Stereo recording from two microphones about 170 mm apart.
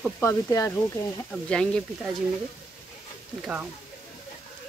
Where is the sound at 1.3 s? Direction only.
5° left (ahead or behind).